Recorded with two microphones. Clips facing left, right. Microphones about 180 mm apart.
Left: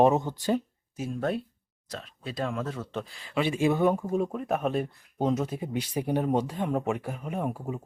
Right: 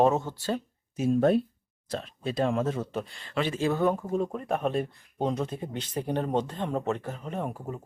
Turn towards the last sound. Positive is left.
turn(degrees=10)  # may be behind; listen again after turning